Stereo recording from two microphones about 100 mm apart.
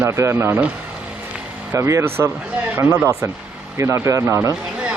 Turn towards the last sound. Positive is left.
turn(degrees=-30)  # may be behind; listen again after turning